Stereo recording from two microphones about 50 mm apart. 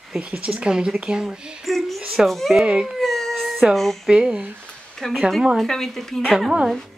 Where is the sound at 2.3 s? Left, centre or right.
Centre.